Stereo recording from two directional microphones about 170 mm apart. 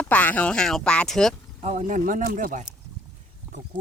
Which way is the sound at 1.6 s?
40° right (ahead or behind).